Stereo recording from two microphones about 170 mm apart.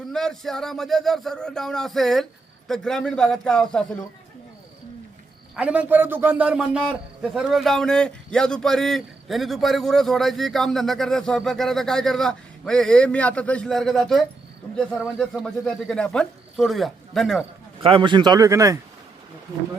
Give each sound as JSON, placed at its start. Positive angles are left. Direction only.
{"t": 0.1, "sound": "a man's voice", "side_deg": 0}
{"t": 5.5, "sound": "a man's voice", "side_deg": -5}
{"t": 17.8, "sound": "a man's voice", "side_deg": -30}